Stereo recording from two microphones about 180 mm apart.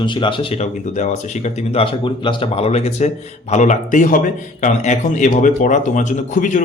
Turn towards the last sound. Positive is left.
turn(degrees=45)  # may be behind; listen again after turning